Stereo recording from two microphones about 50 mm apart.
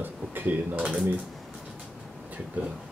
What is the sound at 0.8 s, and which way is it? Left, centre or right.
Speech, centre.